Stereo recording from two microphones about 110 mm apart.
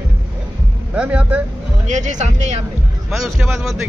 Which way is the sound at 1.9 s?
90° right.